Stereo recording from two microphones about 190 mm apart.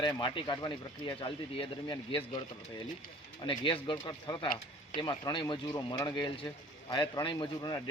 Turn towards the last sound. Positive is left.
turn(degrees=20)  # may be behind; listen again after turning